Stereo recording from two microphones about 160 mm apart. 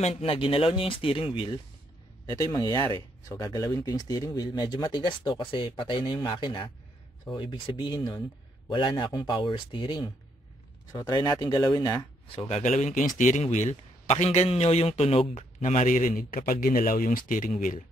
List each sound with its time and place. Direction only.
0.0 s speech: 35° left (ahead or behind)
2.2 s speech: 20° left (ahead or behind)
12.3 s a man's voice: 40° left (ahead or behind)